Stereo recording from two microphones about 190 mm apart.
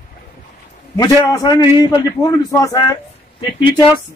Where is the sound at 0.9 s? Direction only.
20° left (ahead or behind).